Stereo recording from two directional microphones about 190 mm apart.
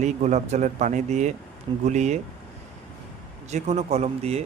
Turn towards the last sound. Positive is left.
turn(degrees=-35)  # may be behind; listen again after turning